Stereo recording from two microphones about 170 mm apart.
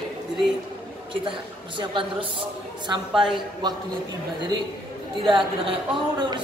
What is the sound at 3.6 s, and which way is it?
Speech, 25° right (ahead or behind).